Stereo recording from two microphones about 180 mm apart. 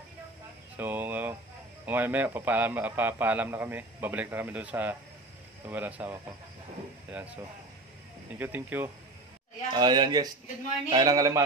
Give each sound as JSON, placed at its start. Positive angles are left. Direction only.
{"t": 0.8, "sound": "a sound", "side_deg": -10}
{"t": 1.9, "sound": "a man's voice", "side_deg": -10}
{"t": 8.4, "sound": "a man's voice", "side_deg": -10}
{"t": 9.7, "sound": "speech", "side_deg": -25}